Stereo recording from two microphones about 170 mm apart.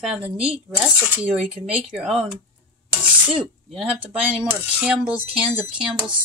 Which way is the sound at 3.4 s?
Centre (ahead or behind).